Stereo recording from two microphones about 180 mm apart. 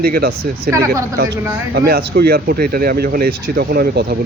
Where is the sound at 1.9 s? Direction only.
60° right (ahead or behind).